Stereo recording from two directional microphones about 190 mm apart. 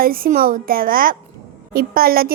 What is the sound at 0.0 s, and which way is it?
A woman's voice, 50° right (ahead or behind).